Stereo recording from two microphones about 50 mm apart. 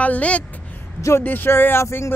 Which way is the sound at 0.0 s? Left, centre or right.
Left.